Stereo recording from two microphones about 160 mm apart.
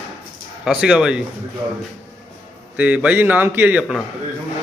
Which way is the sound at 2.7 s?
10° right (ahead or behind).